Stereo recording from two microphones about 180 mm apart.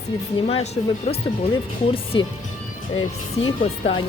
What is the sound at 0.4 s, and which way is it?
Speech, 40° left (ahead or behind).